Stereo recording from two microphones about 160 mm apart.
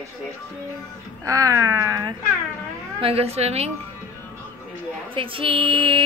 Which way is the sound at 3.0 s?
40° right (ahead or behind).